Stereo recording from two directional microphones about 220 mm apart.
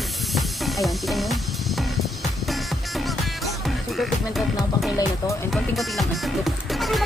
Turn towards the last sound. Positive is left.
turn(degrees=0)  # may be behind; listen again after turning